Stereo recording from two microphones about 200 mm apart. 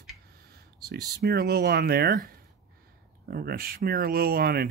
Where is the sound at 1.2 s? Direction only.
50° right (ahead or behind).